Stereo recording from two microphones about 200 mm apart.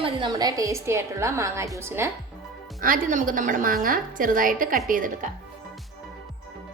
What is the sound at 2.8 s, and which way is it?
A woman's voice, 40° right (ahead or behind).